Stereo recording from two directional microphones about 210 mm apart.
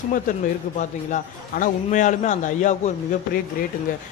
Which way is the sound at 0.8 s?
35° left (ahead or behind).